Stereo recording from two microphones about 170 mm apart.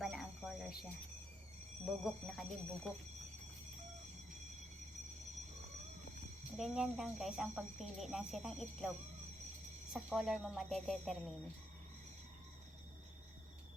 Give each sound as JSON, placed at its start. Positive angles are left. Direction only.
{"t": 0.0, "sound": "a sound", "side_deg": 0}
{"t": 1.8, "sound": "speech", "side_deg": 0}
{"t": 6.6, "sound": "speech", "side_deg": -5}
{"t": 9.9, "sound": "speech", "side_deg": 0}